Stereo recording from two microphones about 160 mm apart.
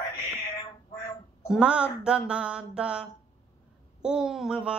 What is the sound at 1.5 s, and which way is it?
Speech, 5° right (ahead or behind).